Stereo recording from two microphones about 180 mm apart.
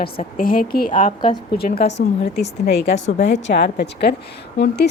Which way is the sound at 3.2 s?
75° left (ahead or behind).